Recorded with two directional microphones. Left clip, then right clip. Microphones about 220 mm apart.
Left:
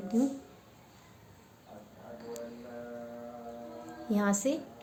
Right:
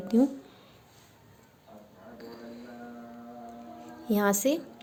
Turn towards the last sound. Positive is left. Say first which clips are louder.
# right 5 dB
turn(degrees=-45)  # may be behind; listen again after turning